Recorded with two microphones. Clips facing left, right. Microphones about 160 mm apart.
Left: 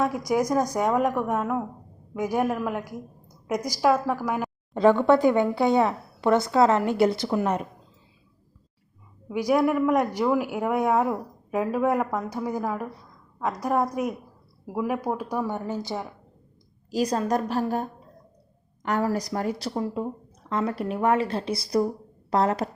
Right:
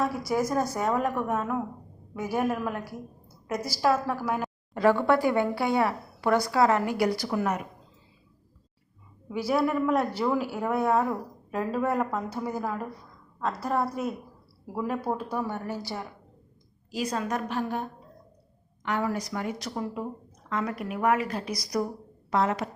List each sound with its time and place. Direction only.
0.2 s a woman's voice: 15° left (ahead or behind)
9.3 s a woman's voice: 15° left (ahead or behind)
16.9 s a woman's voice: 40° left (ahead or behind)